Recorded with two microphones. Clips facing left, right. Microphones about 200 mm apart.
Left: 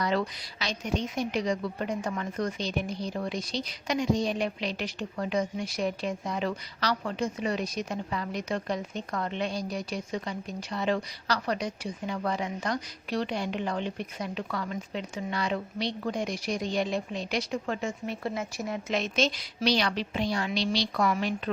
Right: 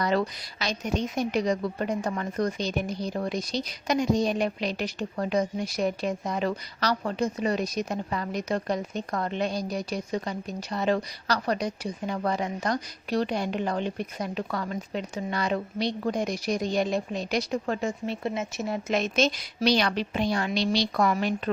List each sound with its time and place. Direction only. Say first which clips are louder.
0.0 s a woman's voice: right 3 dB; 45° right (ahead or behind); by 18.7 s 20° right (ahead or behind)
18.7 s a woman's voice: right 4 dB; 45° right (ahead or behind)